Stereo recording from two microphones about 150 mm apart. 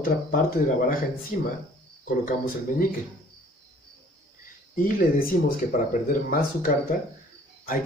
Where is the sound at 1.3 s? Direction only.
60° left (ahead or behind).